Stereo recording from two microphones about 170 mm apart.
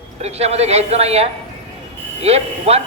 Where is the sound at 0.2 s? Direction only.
40° right (ahead or behind).